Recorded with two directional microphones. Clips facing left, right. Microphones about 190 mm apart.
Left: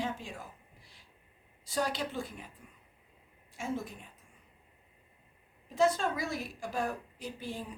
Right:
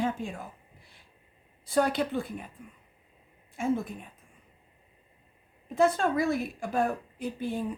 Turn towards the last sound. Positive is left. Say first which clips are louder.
# right 8 dB
turn(degrees=-55)  # may be behind; listen again after turning